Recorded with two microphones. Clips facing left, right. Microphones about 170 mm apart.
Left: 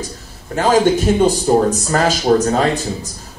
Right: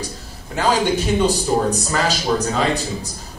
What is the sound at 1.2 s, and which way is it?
A man's voice, 45° left (ahead or behind).